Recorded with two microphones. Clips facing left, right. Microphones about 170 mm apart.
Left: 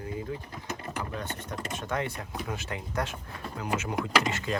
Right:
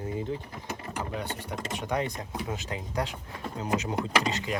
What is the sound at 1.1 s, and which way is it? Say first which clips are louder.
Speech: right 2 dB; 15° right (ahead or behind).